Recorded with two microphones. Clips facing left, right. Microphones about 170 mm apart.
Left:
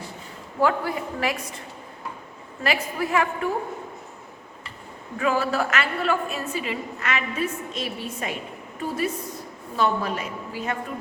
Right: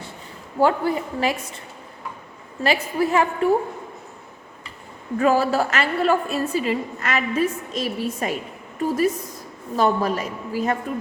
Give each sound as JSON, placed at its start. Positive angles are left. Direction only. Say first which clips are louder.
{"t": 0.6, "sound": "a woman's voice", "louder": "right 4 dB", "side_deg": -30}
{"t": 2.6, "sound": "a woman's voice", "louder": "right 5 dB", "side_deg": -30}
{"t": 5.2, "sound": "a woman's voice", "louder": "right 5 dB", "side_deg": -35}